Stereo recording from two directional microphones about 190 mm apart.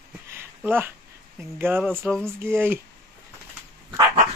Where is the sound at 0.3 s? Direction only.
10° right (ahead or behind).